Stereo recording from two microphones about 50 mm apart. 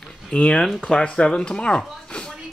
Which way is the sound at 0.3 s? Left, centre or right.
Centre.